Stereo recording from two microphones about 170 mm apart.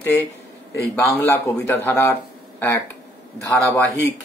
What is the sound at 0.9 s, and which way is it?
A man's voice, 15° left (ahead or behind).